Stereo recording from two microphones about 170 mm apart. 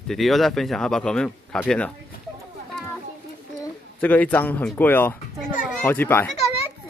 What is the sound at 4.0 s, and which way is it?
Speech, 10° left (ahead or behind).